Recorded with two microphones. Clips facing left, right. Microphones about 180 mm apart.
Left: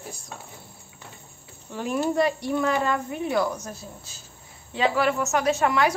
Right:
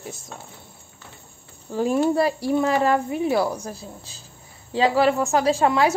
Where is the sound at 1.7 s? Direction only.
35° right (ahead or behind).